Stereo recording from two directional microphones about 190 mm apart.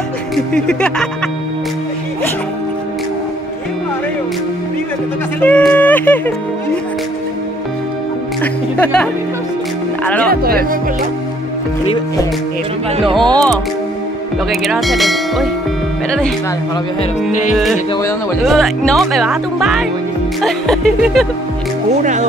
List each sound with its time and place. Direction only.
0.7 s speech: 5° left (ahead or behind)
5.4 s speech: 5° left (ahead or behind)
8.4 s speech: 5° left (ahead or behind)
10.3 s speech: 50° right (ahead or behind)
13.3 s speech: 5° left (ahead or behind)
18.4 s speech: centre (ahead or behind)